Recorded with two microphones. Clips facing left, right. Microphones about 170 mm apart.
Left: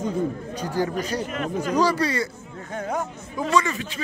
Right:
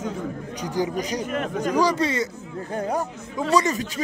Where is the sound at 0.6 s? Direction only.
15° right (ahead or behind).